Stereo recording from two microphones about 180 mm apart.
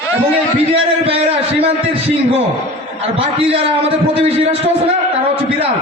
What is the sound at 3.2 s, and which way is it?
A man's voice, 30° right (ahead or behind).